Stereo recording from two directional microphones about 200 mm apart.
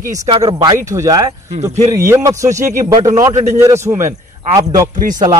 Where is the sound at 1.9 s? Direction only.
15° right (ahead or behind).